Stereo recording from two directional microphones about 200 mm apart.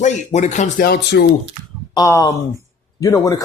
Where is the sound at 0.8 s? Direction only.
50° left (ahead or behind).